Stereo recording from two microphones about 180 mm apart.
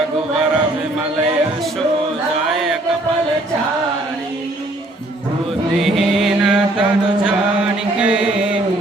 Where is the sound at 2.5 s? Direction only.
Centre (ahead or behind).